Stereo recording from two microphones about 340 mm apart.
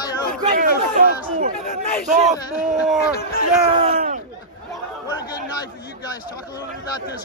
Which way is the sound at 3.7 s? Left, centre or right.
Centre.